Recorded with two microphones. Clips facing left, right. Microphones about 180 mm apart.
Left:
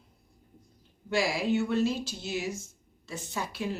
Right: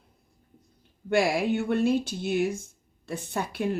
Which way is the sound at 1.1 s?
55° right (ahead or behind).